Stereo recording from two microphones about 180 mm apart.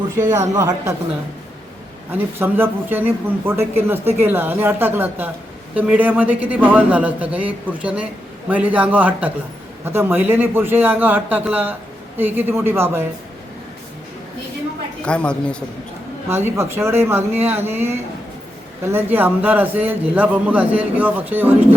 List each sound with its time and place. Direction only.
0.2 s a man's voice: 15° right (ahead or behind)
2.1 s a man's voice: 10° right (ahead or behind)
15.0 s a woman's voice: 5° left (ahead or behind)
16.3 s a man's voice: 15° right (ahead or behind)